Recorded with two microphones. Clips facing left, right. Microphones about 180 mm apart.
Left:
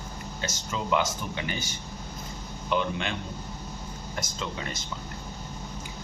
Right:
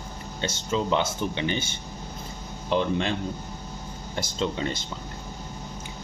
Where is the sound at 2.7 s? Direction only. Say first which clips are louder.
Right 4 dB; 35° right (ahead or behind).